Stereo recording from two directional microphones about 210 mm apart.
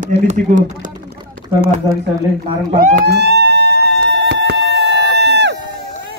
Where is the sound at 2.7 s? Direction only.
45° right (ahead or behind).